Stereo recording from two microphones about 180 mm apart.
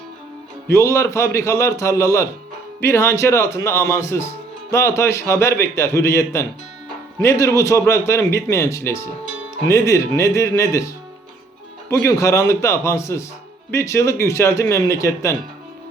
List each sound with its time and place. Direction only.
0.7 s a man's voice: 15° left (ahead or behind)